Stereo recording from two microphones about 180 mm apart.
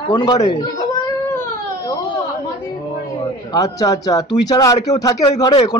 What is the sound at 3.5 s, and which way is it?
Speech, 20° left (ahead or behind).